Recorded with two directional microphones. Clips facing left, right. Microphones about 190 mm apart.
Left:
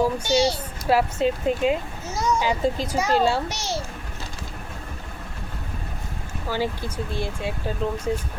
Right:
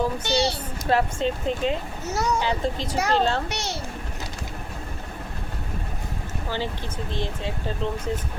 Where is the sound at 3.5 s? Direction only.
65° right (ahead or behind).